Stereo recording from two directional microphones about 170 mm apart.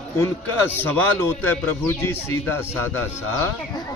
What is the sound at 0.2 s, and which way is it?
A man's voice, 15° left (ahead or behind).